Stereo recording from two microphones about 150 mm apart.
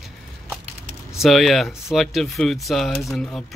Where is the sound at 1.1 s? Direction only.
Centre (ahead or behind).